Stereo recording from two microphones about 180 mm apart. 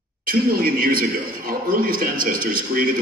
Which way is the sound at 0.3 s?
55° right (ahead or behind).